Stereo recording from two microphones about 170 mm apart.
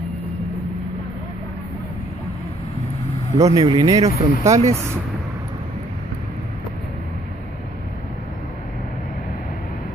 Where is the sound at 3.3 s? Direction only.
40° right (ahead or behind).